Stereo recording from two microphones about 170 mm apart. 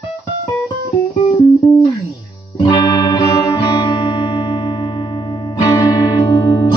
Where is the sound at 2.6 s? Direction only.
25° left (ahead or behind).